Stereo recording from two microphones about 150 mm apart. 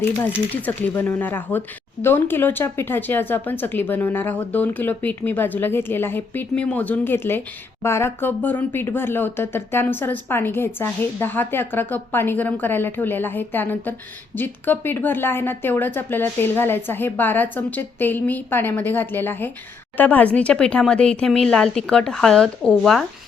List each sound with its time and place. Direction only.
0.5 s speech: 10° left (ahead or behind)